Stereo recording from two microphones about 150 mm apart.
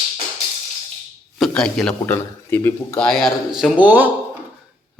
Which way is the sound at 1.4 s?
5° left (ahead or behind).